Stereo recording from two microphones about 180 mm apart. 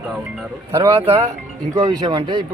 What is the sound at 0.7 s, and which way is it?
Speech, 15° right (ahead or behind).